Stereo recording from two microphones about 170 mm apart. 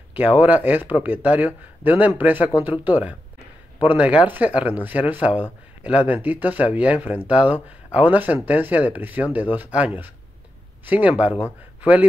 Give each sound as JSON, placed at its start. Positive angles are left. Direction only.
{"t": 0.4, "sound": "speech", "side_deg": -10}